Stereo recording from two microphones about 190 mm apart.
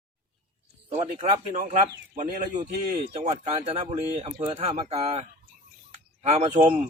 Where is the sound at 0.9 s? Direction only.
35° right (ahead or behind).